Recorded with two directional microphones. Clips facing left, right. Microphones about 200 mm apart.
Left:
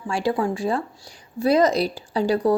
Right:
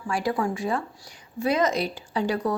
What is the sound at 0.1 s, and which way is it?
Speech, 30° left (ahead or behind).